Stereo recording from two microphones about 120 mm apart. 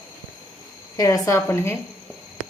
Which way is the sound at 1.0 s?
25° left (ahead or behind).